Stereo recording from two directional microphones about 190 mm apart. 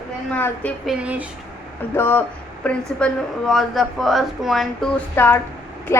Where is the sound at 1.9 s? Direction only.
10° left (ahead or behind).